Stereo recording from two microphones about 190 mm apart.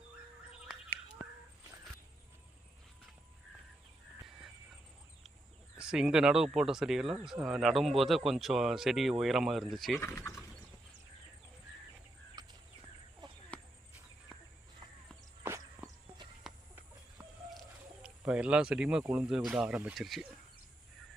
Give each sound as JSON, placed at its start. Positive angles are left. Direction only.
{"t": 5.7, "sound": "speech", "side_deg": -5}
{"t": 10.0, "sound": "speech", "side_deg": 15}
{"t": 12.4, "sound": "bird", "side_deg": -20}
{"t": 13.5, "sound": "chicken", "side_deg": 10}
{"t": 14.3, "sound": "a sound", "side_deg": 5}
{"t": 16.4, "sound": "chicken", "side_deg": 0}
{"t": 18.0, "sound": "speech", "side_deg": -5}